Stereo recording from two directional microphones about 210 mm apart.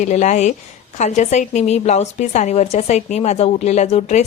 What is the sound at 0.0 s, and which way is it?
A woman's voice, 35° left (ahead or behind).